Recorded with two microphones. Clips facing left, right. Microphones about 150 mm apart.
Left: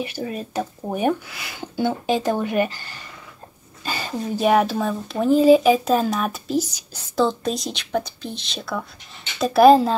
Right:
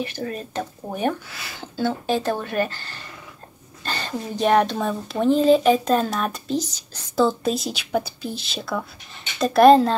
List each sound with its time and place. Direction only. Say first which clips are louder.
0.0 s speech: left 1 dB; 10° left (ahead or behind)
7.2 s speech: right 1 dB; 5° right (ahead or behind)